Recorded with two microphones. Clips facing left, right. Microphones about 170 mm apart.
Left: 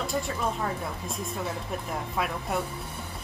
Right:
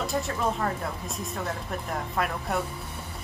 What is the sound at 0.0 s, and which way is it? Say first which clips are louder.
Music: right 1 dB; centre (ahead or behind).